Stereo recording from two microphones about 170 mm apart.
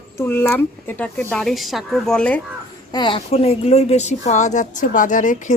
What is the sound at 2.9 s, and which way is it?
Speech, 30° left (ahead or behind).